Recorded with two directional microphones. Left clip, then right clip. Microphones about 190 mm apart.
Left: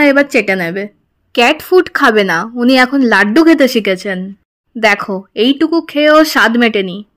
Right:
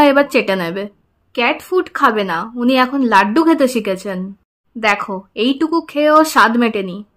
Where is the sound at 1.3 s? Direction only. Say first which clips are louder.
Left 7 dB; 35° left (ahead or behind); by 4.2 s 15° left (ahead or behind).